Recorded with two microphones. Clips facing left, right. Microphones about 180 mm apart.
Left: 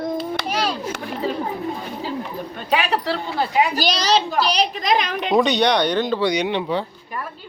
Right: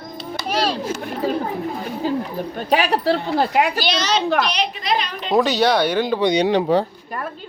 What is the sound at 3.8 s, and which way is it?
A woman's voice, 35° left (ahead or behind).